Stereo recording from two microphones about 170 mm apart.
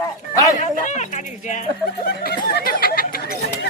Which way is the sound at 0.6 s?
45° left (ahead or behind).